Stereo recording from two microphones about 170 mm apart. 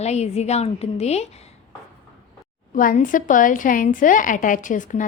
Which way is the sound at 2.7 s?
50° left (ahead or behind).